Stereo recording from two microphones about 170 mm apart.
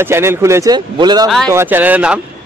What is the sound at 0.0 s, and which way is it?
Speech, 15° right (ahead or behind).